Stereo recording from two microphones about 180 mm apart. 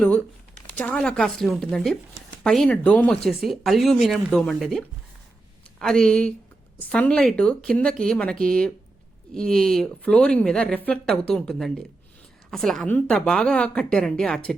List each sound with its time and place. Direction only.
0.7 s speech: 5° left (ahead or behind)